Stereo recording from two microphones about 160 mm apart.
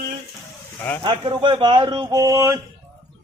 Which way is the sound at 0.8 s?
15° left (ahead or behind).